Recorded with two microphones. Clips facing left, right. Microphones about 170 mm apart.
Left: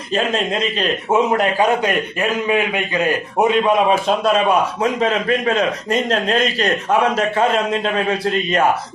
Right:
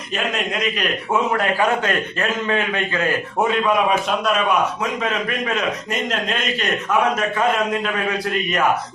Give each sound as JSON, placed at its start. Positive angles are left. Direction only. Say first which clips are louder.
{"t": 0.3, "sound": "a man's voice", "louder": "left 3 dB", "side_deg": 30}
{"t": 4.8, "sound": "a man's voice", "louder": "left 5 dB", "side_deg": 30}